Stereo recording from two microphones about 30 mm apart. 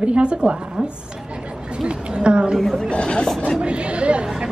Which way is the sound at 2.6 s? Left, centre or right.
Centre.